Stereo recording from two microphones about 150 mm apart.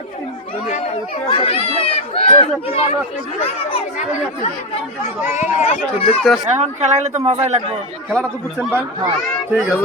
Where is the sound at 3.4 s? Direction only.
40° left (ahead or behind).